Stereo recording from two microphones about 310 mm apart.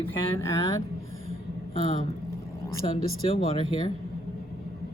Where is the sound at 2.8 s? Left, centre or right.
Left.